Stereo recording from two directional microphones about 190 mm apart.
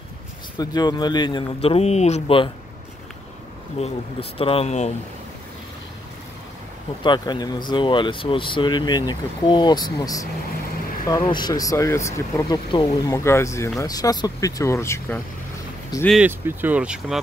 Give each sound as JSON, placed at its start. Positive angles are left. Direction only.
{"t": 0.6, "sound": "speech", "side_deg": 20}
{"t": 3.8, "sound": "speech", "side_deg": 30}
{"t": 7.0, "sound": "speech", "side_deg": 25}
{"t": 16.1, "sound": "speech", "side_deg": -10}